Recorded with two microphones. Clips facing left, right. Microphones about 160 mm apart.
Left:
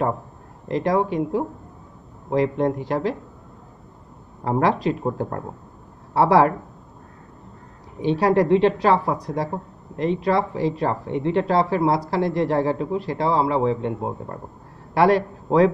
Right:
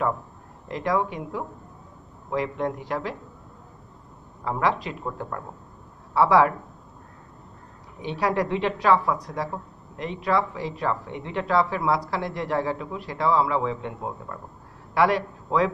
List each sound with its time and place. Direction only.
0.7 s speech: 35° left (ahead or behind)
4.5 s speech: 40° left (ahead or behind)
8.0 s speech: 30° left (ahead or behind)